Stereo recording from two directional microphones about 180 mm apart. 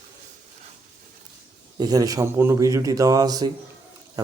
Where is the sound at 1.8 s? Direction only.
20° right (ahead or behind).